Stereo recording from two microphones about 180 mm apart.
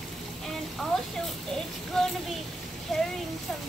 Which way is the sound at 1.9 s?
5° left (ahead or behind).